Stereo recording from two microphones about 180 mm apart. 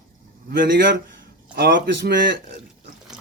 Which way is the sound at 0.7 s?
75° right (ahead or behind).